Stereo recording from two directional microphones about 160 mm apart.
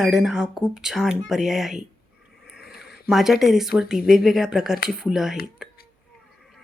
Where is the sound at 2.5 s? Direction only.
Centre (ahead or behind).